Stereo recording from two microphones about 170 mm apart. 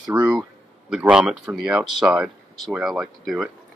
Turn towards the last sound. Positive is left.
turn(degrees=0)  # may be behind; listen again after turning